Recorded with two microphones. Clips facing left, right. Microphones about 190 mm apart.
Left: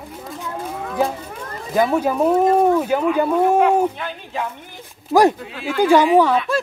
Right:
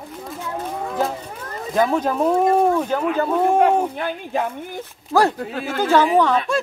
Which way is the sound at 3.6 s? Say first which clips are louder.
Left 1 dB; 45° right (ahead or behind).